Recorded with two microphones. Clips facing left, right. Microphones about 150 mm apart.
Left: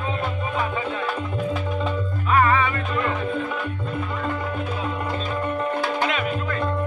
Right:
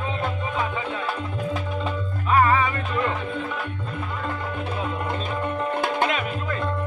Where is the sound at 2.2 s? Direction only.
20° right (ahead or behind).